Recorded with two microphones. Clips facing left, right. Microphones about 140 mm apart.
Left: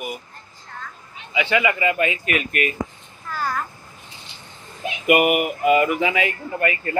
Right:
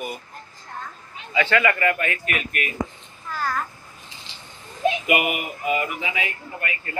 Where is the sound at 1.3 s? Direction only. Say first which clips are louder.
Even; 15° left (ahead or behind).